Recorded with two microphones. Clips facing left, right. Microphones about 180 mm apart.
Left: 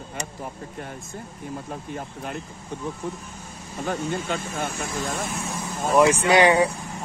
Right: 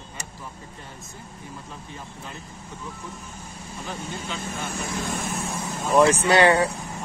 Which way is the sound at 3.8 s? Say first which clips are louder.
Left 8 dB; 55° left (ahead or behind).